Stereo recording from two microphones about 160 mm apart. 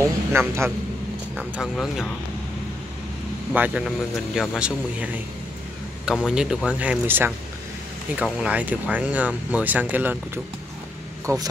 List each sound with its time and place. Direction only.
0.3 s speech: 15° right (ahead or behind)
1.3 s speech: centre (ahead or behind)
3.5 s speech: 10° right (ahead or behind)